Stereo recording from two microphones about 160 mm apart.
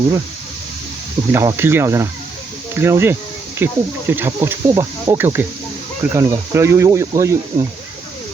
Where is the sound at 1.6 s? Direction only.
15° right (ahead or behind).